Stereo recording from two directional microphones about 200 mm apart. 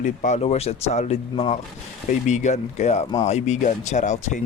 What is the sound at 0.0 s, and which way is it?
Speech, 40° left (ahead or behind).